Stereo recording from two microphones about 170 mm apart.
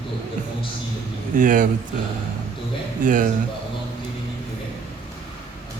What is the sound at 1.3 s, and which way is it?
Speech, 50° right (ahead or behind).